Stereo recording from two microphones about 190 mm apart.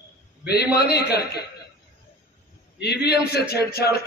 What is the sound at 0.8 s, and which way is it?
Speech, 55° left (ahead or behind).